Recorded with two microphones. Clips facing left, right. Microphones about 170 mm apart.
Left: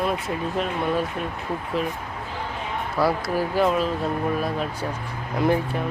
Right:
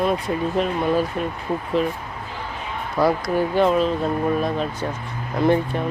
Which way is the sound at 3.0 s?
5° left (ahead or behind).